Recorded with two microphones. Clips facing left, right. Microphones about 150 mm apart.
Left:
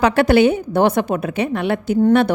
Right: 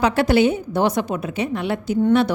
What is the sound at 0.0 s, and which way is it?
A woman's voice, 60° left (ahead or behind).